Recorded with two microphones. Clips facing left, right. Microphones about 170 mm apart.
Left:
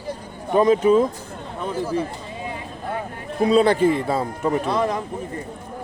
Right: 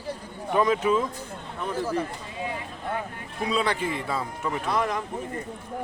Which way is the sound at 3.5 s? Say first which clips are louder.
Left 10 dB; 40° left (ahead or behind).